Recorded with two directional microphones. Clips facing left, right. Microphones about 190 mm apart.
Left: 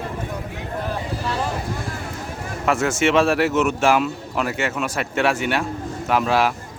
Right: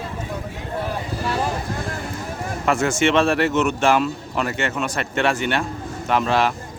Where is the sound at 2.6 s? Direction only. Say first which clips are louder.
Even; 5° left (ahead or behind).